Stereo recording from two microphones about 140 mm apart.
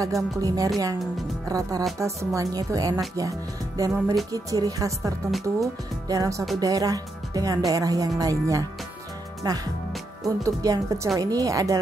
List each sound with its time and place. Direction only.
0.0 s speech: 25° right (ahead or behind)